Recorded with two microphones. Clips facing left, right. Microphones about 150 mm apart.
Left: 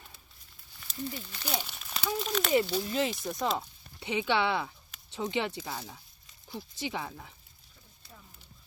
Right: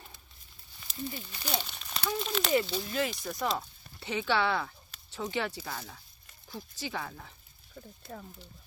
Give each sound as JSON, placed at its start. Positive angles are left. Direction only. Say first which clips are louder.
{"t": 0.9, "sound": "speech", "louder": "left 1 dB", "side_deg": -10}
{"t": 1.5, "sound": "speech", "louder": "even", "side_deg": 5}
{"t": 2.5, "sound": "speech", "louder": "left 2 dB", "side_deg": 10}
{"t": 2.9, "sound": "speech", "louder": "left 2 dB", "side_deg": 25}
{"t": 7.8, "sound": "a sound", "louder": "right 12 dB", "side_deg": -55}